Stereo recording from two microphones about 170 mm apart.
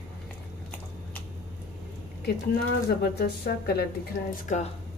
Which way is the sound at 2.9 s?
70° left (ahead or behind).